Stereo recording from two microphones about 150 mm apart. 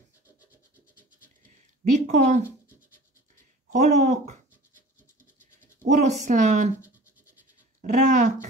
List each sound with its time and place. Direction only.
2.0 s speech: 50° right (ahead or behind)
3.7 s speech: 55° right (ahead or behind)
5.4 s scratch: 55° right (ahead or behind)
7.8 s speech: 55° right (ahead or behind)